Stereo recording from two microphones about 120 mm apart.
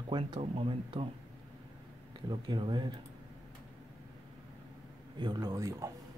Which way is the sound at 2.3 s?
40° right (ahead or behind).